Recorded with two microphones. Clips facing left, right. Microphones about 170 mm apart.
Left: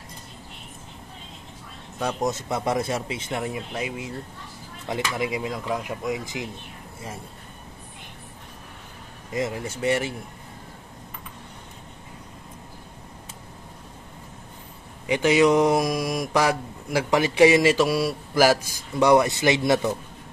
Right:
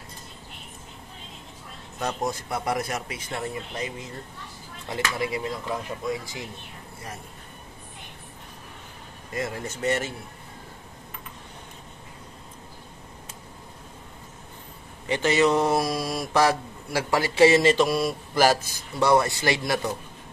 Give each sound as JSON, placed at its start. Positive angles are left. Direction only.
{"t": 2.0, "sound": "speech", "side_deg": 10}
{"t": 2.3, "sound": "speech", "side_deg": 20}
{"t": 3.3, "sound": "mantra", "side_deg": 15}
{"t": 5.2, "sound": "speech", "side_deg": 15}
{"t": 9.3, "sound": "mantra", "side_deg": 15}
{"t": 15.0, "sound": "mantra", "side_deg": 10}